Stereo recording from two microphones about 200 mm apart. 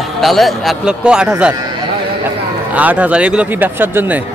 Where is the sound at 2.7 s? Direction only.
5° right (ahead or behind).